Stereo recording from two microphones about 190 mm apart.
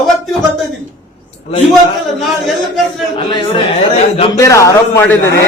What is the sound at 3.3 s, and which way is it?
A man's voice, 30° left (ahead or behind).